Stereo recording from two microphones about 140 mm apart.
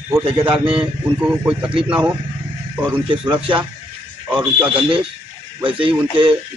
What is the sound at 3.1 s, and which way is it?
Speech, 40° right (ahead or behind).